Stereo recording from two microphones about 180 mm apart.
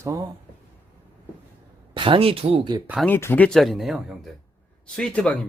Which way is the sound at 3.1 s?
10° left (ahead or behind).